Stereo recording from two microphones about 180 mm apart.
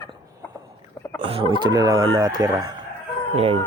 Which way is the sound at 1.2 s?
30° right (ahead or behind).